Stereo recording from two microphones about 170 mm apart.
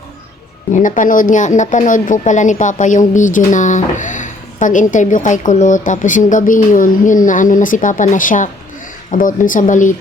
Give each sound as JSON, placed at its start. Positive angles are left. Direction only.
{"t": 0.7, "sound": "speech", "side_deg": 50}